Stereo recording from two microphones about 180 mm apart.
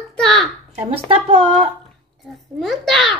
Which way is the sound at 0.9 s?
30° right (ahead or behind).